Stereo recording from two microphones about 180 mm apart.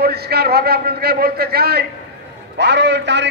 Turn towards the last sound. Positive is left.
turn(degrees=-75)  # may be behind; listen again after turning